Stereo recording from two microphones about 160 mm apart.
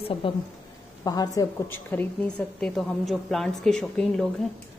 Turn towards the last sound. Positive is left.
turn(degrees=0)  # may be behind; listen again after turning